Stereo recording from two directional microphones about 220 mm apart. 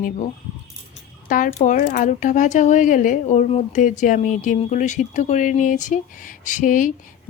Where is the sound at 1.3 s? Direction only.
35° left (ahead or behind).